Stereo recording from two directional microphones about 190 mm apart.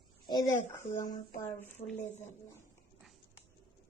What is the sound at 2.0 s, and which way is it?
Speech, 40° left (ahead or behind).